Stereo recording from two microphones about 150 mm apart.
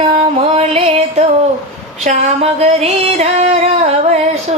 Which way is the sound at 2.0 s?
50° right (ahead or behind).